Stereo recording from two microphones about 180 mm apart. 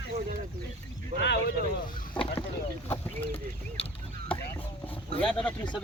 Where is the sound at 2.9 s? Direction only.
10° left (ahead or behind).